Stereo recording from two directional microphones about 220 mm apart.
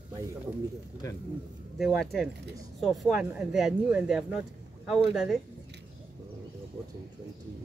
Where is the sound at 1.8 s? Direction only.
Centre (ahead or behind).